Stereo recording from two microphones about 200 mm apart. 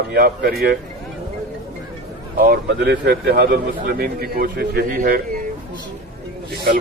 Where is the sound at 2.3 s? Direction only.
50° right (ahead or behind).